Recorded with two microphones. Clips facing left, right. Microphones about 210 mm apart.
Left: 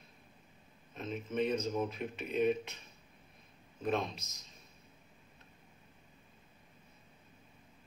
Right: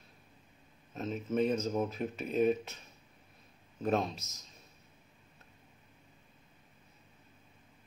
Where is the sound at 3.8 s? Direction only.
40° right (ahead or behind).